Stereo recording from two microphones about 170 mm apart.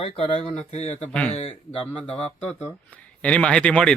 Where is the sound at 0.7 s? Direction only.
40° left (ahead or behind).